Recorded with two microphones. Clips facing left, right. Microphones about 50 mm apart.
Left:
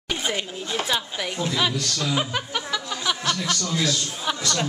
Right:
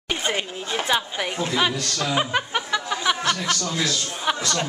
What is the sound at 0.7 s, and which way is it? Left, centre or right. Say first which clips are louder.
A woman's voice: right 3 dB; centre.